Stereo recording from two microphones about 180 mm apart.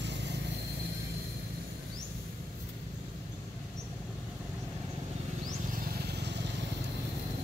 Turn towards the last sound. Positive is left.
turn(degrees=-70)  # may be behind; listen again after turning